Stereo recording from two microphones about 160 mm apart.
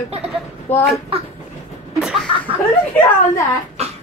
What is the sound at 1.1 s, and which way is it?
Speech, 35° right (ahead or behind).